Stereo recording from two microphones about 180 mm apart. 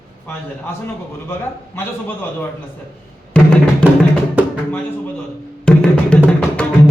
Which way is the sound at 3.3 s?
5° left (ahead or behind).